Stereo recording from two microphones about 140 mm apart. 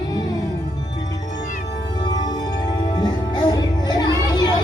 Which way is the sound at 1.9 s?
30° left (ahead or behind).